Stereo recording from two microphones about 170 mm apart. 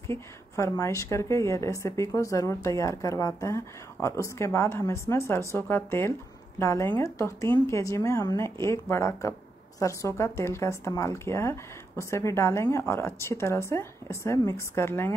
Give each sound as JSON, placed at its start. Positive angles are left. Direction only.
{"t": 0.0, "sound": "a woman's voice", "side_deg": 15}